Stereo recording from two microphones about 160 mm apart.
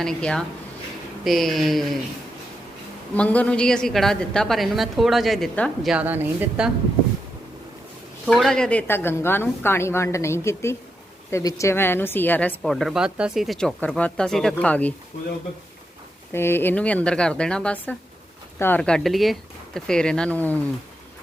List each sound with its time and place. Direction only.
0.0 s a woman's voice: 5° left (ahead or behind)
3.2 s a woman's voice: 10° left (ahead or behind)
5.9 s a woman's voice: 10° right (ahead or behind)
8.3 s a woman's voice: 5° left (ahead or behind)
8.9 s a woman's voice: 15° left (ahead or behind)
16.3 s a woman's voice: 15° left (ahead or behind)